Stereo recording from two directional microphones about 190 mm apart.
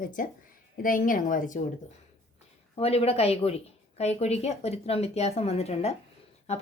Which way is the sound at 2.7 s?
30° left (ahead or behind).